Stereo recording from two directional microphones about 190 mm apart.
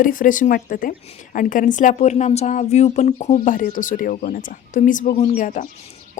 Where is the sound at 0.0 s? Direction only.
45° left (ahead or behind).